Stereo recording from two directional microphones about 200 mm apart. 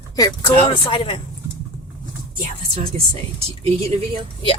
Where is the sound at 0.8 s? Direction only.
25° left (ahead or behind).